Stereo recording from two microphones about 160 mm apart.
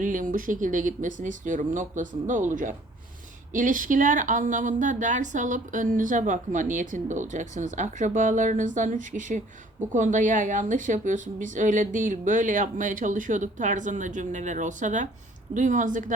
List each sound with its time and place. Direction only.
0.0 s speech: 55° right (ahead or behind)